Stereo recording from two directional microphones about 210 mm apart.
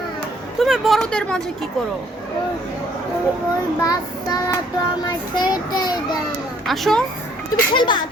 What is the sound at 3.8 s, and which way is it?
Speech, 15° left (ahead or behind).